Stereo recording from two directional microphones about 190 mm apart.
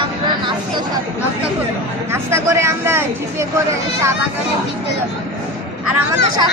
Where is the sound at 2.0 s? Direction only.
15° right (ahead or behind).